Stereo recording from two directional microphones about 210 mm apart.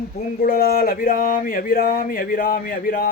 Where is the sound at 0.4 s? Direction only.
45° left (ahead or behind).